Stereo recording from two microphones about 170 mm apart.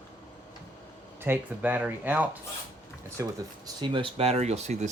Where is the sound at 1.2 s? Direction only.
10° right (ahead or behind).